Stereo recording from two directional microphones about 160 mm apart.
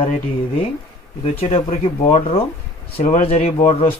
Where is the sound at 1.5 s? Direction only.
40° left (ahead or behind).